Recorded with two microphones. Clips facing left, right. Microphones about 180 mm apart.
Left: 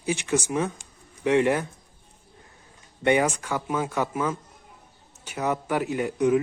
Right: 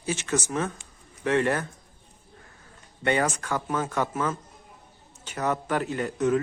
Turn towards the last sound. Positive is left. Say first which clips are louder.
# left 2 dB
turn(degrees=10)  # may be behind; listen again after turning